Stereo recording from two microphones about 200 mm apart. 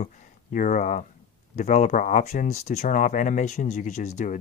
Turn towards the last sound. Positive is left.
turn(degrees=35)  # may be behind; listen again after turning